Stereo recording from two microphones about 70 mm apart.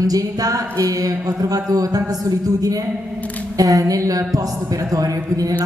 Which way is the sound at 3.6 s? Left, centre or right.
Right.